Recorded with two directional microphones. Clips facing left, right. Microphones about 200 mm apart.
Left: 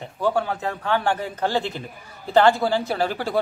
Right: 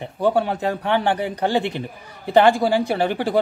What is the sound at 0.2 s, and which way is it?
Speech, 20° right (ahead or behind).